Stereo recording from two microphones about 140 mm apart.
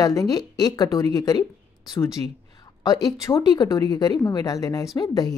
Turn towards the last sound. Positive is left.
turn(degrees=25)  # may be behind; listen again after turning